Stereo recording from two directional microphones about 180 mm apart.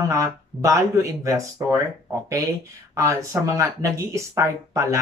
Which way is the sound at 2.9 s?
15° right (ahead or behind).